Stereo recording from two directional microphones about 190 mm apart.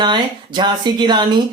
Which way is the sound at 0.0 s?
25° right (ahead or behind).